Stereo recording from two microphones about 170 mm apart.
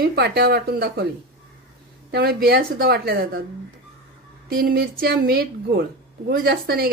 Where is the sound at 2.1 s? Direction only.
65° right (ahead or behind).